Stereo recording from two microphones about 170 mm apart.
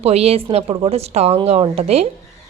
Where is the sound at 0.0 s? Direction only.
35° right (ahead or behind).